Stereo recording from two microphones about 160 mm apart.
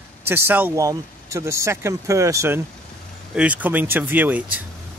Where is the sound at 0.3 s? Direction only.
15° right (ahead or behind).